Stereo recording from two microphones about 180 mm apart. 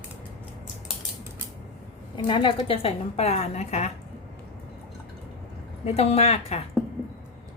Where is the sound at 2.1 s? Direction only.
25° left (ahead or behind).